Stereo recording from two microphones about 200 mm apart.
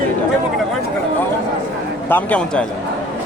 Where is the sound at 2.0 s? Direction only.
10° left (ahead or behind).